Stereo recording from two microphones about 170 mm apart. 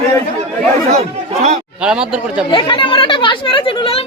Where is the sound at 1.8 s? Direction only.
5° right (ahead or behind).